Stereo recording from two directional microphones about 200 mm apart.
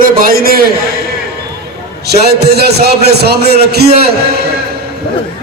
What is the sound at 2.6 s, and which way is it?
A man's voice, 55° right (ahead or behind).